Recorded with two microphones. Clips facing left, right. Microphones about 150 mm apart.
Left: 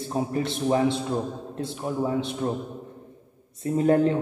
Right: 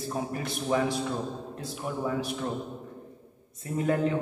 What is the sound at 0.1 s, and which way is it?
A man's voice, 25° left (ahead or behind).